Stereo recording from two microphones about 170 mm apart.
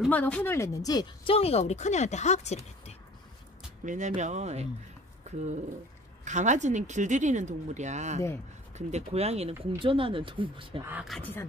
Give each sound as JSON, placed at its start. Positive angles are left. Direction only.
{"t": 0.1, "sound": "speech", "side_deg": 10}
{"t": 3.8, "sound": "speech", "side_deg": -45}
{"t": 10.9, "sound": "speech", "side_deg": -5}
{"t": 11.1, "sound": "speech", "side_deg": 10}